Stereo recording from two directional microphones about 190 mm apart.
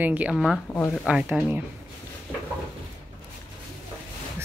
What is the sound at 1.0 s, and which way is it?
Speech, 5° right (ahead or behind).